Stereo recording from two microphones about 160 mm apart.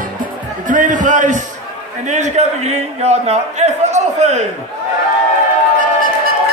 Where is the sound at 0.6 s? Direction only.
55° right (ahead or behind).